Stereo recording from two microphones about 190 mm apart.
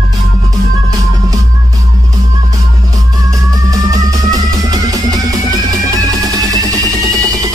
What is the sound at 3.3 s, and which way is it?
Music, 20° right (ahead or behind).